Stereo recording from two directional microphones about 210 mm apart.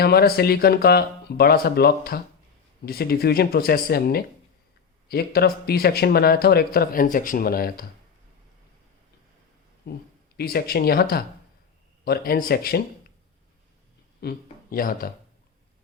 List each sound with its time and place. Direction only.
0.0 s speech: 50° left (ahead or behind)
9.8 s speech: 50° left (ahead or behind)
14.2 s speech: 45° left (ahead or behind)